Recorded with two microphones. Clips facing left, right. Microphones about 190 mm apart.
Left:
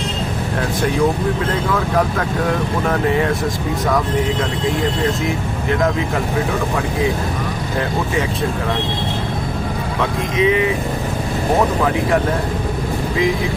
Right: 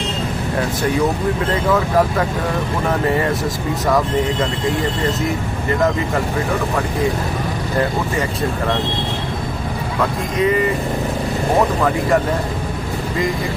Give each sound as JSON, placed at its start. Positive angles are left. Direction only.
{"t": 1.7, "sound": "speech", "side_deg": -5}
{"t": 10.0, "sound": "speech", "side_deg": 0}